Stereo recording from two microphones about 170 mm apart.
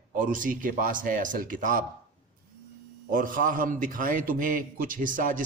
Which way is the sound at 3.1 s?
50° right (ahead or behind).